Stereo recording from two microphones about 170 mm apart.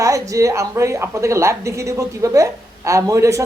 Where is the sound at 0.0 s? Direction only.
20° right (ahead or behind).